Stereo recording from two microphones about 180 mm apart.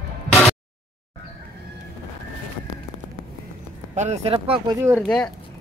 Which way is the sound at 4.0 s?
35° right (ahead or behind).